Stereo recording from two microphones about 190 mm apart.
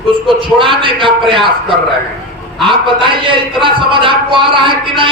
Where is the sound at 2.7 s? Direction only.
25° right (ahead or behind).